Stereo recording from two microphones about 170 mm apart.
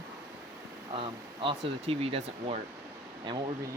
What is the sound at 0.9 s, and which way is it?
Speech, 30° right (ahead or behind).